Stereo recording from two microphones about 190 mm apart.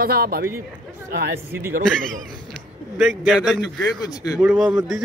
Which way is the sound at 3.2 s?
Centre (ahead or behind).